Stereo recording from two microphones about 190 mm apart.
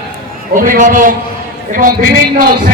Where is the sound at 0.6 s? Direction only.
45° right (ahead or behind).